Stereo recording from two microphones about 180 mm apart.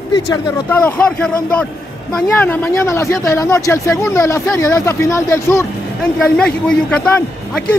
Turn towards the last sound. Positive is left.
turn(degrees=5)  # may be behind; listen again after turning